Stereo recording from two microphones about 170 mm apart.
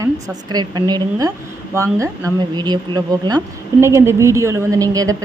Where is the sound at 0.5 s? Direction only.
25° right (ahead or behind).